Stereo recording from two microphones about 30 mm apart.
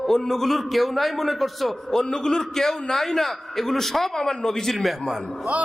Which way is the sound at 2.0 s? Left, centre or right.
Left.